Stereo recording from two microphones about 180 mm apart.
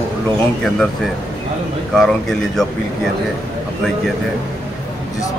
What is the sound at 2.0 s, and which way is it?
Speech, centre (ahead or behind).